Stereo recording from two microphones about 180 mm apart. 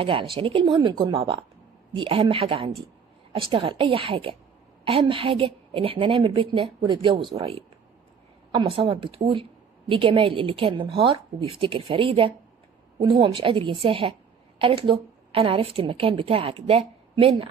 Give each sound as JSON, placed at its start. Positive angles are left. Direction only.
{"t": 0.0, "sound": "a woman's voice", "side_deg": -30}